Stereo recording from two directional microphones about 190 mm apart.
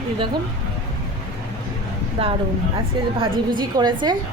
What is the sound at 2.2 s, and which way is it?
A woman's voice, 30° right (ahead or behind).